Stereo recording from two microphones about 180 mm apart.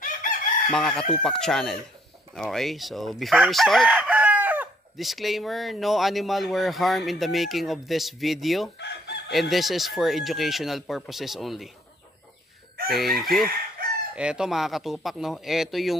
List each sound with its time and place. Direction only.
0.0 s chicken: 50° left (ahead or behind)
0.7 s chicken: 5° left (ahead or behind)
8.7 s chicken: 70° left (ahead or behind)
9.3 s chicken: centre (ahead or behind)
12.9 s chicken: centre (ahead or behind)